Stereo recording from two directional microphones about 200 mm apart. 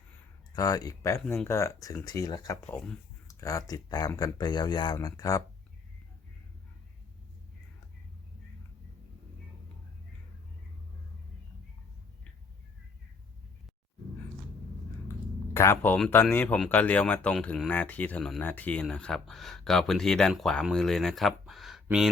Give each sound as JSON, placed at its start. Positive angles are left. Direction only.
{"t": 0.5, "sound": "speech", "side_deg": 20}
{"t": 15.5, "sound": "speech", "side_deg": 10}